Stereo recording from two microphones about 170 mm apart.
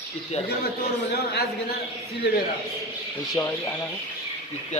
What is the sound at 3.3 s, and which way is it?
Speech, 5° left (ahead or behind).